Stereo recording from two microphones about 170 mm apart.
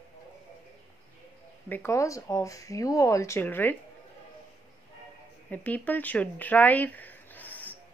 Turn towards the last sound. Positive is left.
turn(degrees=10)  # may be behind; listen again after turning